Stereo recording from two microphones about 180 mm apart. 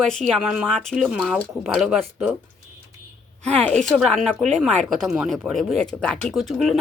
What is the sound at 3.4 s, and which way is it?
Speech, 5° left (ahead or behind).